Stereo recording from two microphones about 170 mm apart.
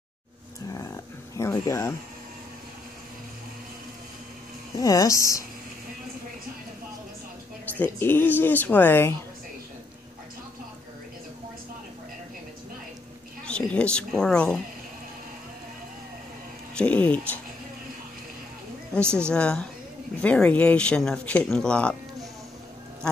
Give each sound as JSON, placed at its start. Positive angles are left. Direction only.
{"t": 0.7, "sound": "a sound", "side_deg": 20}
{"t": 4.7, "sound": "speech", "side_deg": 20}
{"t": 7.8, "sound": "speech", "side_deg": 10}
{"t": 13.5, "sound": "a woman's voice", "side_deg": 5}
{"t": 16.7, "sound": "speech", "side_deg": 5}
{"t": 18.9, "sound": "speech", "side_deg": 5}